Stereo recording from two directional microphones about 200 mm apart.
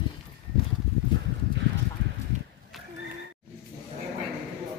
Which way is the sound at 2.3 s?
35° right (ahead or behind).